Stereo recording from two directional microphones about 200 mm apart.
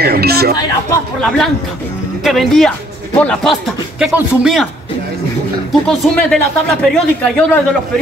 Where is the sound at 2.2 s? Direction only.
Centre (ahead or behind).